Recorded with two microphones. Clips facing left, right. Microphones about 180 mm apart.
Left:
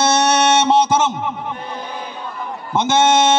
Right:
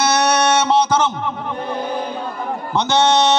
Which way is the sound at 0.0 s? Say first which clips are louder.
Left 1 dB; 25° left (ahead or behind).